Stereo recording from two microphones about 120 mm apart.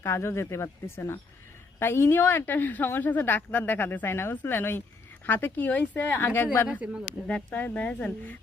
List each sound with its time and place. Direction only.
0.0 s a woman's voice: 20° left (ahead or behind)